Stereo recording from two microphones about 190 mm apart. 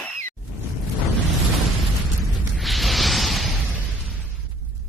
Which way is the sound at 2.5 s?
Centre (ahead or behind).